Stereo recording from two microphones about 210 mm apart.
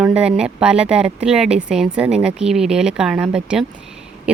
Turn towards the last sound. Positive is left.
turn(degrees=-5)  # may be behind; listen again after turning